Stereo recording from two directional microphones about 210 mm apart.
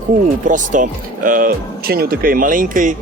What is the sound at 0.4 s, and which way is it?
Speech, 35° right (ahead or behind).